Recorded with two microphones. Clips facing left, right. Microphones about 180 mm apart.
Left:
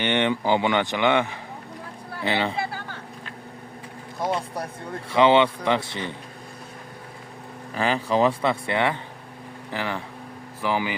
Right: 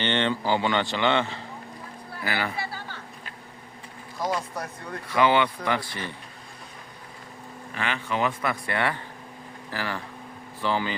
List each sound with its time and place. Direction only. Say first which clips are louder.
0.0 s speech: left 3 dB; 15° left (ahead or behind)
4.2 s speech: left 2 dB; 25° left (ahead or behind)
7.8 s speech: left 6 dB; 35° left (ahead or behind); by 10.9 s 15° left (ahead or behind)